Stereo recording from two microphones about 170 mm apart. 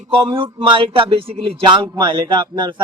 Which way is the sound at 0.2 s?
30° right (ahead or behind).